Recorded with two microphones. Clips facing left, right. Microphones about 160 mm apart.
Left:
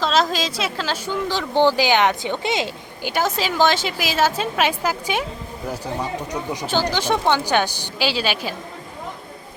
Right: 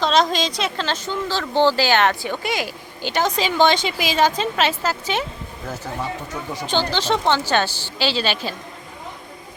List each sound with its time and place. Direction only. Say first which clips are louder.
0.0 s speech: right 1 dB; 5° left (ahead or behind); by 2.7 s 25° left (ahead or behind)
3.0 s speech: right 1 dB; 10° left (ahead or behind)